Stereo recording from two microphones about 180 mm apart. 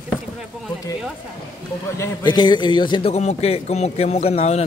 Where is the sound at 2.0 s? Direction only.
25° left (ahead or behind).